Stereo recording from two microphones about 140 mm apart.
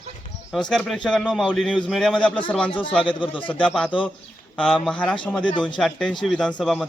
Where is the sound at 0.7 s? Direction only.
5° left (ahead or behind).